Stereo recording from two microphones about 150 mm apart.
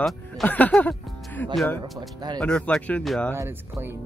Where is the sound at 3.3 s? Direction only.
15° right (ahead or behind).